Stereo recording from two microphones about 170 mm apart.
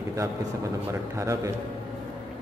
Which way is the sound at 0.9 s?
20° right (ahead or behind).